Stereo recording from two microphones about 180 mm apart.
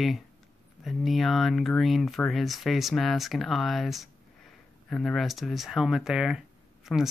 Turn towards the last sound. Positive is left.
turn(degrees=0)  # may be behind; listen again after turning